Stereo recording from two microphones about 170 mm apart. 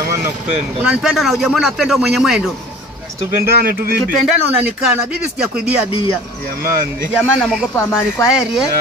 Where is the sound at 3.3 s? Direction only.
60° right (ahead or behind).